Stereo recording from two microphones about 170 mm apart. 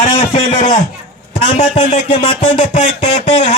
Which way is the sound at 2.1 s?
30° left (ahead or behind).